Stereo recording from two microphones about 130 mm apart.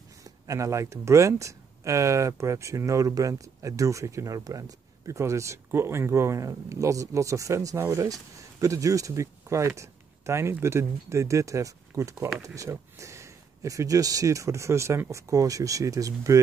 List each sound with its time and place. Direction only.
0.2 s speech: 25° right (ahead or behind)